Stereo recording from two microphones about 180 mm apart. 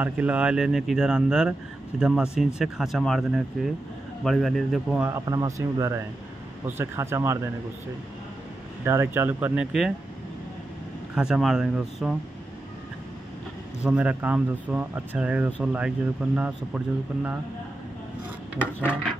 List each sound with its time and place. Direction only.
0.0 s speech: 10° right (ahead or behind)
5.1 s speech: 20° right (ahead or behind)
8.8 s speech: 15° right (ahead or behind)
11.1 s speech: 5° right (ahead or behind)
13.8 s speech: 5° right (ahead or behind)
18.6 s a sound: 10° left (ahead or behind)